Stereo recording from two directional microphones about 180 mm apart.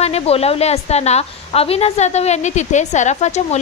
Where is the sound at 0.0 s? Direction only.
35° left (ahead or behind).